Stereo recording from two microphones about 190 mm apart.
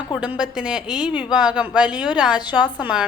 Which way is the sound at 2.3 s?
20° left (ahead or behind).